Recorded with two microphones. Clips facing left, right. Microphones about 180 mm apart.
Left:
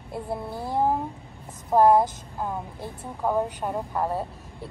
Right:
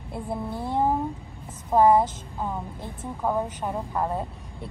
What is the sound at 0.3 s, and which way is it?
Speech, 10° left (ahead or behind).